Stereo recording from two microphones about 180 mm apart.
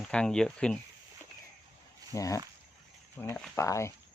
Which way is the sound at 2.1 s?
20° left (ahead or behind).